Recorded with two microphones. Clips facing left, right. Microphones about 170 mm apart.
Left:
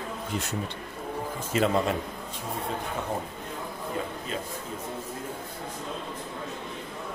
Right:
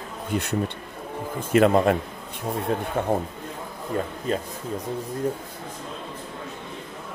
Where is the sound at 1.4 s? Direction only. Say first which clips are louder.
Right 7 dB; 55° right (ahead or behind).